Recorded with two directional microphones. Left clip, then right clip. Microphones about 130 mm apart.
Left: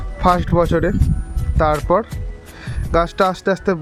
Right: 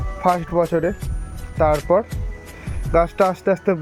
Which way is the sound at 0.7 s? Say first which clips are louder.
Left 2 dB; 40° left (ahead or behind).